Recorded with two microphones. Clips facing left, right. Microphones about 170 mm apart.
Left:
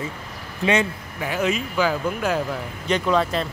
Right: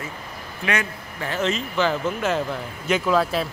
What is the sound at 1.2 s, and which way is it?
Speech, 10° left (ahead or behind).